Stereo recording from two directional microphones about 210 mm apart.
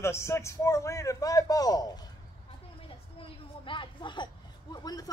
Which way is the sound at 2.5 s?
25° left (ahead or behind).